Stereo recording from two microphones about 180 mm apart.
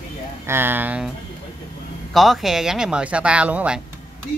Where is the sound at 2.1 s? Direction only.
Centre (ahead or behind).